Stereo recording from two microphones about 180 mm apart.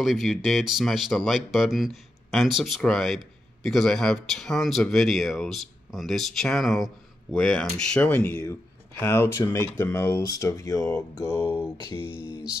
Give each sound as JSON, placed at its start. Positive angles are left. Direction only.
{"t": 0.0, "sound": "speech", "side_deg": 0}
{"t": 11.7, "sound": "mantra", "side_deg": 20}
{"t": 12.1, "sound": "speech", "side_deg": -10}